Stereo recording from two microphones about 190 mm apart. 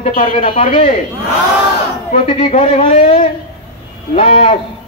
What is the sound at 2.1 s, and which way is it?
A man's voice, 30° left (ahead or behind).